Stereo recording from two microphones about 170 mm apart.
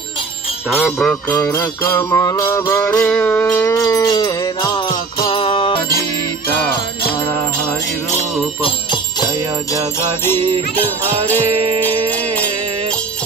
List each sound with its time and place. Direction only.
0.7 s jingle bell: centre (ahead or behind)
3.8 s music: 20° left (ahead or behind)
8.6 s jingle bell: 25° left (ahead or behind)
11.5 s jingle bell: 35° right (ahead or behind)